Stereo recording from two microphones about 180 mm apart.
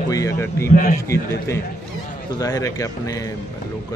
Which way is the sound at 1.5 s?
15° left (ahead or behind).